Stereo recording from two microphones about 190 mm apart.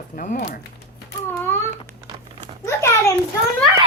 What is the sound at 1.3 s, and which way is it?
Baby cry, 15° left (ahead or behind).